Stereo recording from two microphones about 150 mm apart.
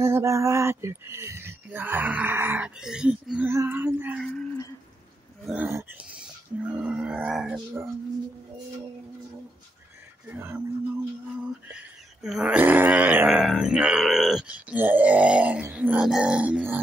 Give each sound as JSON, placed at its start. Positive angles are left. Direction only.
{"t": 0.0, "sound": "grunt", "side_deg": -20}
{"t": 4.2, "sound": "a sound", "side_deg": 5}
{"t": 5.7, "sound": "speech", "side_deg": -20}
{"t": 6.6, "sound": "grunt", "side_deg": -10}
{"t": 10.2, "sound": "grunt", "side_deg": -15}
{"t": 12.2, "sound": "grunt", "side_deg": -5}